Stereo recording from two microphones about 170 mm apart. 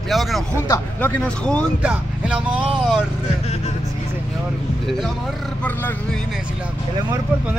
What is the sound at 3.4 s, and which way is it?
Vehicle, 35° left (ahead or behind).